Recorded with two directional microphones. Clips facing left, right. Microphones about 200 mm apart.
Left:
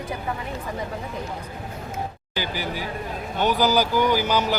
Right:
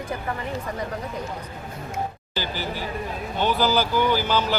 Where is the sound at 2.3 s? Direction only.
15° left (ahead or behind).